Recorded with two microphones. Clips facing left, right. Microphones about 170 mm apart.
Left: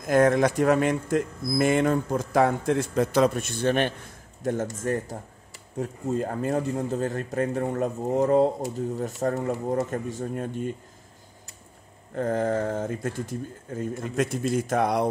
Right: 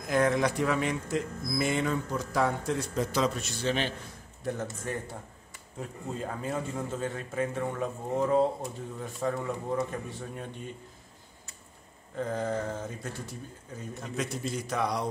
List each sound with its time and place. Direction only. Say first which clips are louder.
0.0 s speech: left 6 dB; 50° left (ahead or behind)
5.8 s a man's voice: left 9 dB; 45° left (ahead or behind)
12.2 s speech: left 6 dB; 50° left (ahead or behind)